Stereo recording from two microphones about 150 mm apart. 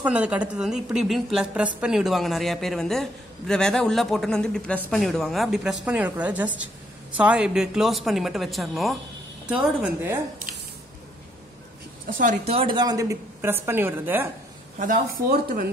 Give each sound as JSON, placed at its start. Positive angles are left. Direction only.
{"t": 0.0, "sound": "a man's voice", "side_deg": -10}
{"t": 12.1, "sound": "a woman's voice", "side_deg": -60}
{"t": 12.4, "sound": "a woman's voice", "side_deg": -40}
{"t": 12.7, "sound": "a woman's voice", "side_deg": -25}
{"t": 14.8, "sound": "speech", "side_deg": -70}